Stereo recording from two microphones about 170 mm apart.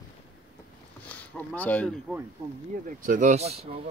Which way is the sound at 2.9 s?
50° right (ahead or behind).